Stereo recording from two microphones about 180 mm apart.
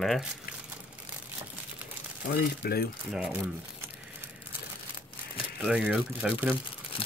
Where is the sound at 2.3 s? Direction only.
55° left (ahead or behind).